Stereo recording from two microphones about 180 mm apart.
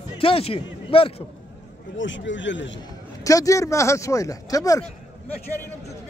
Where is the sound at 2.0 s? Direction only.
90° left.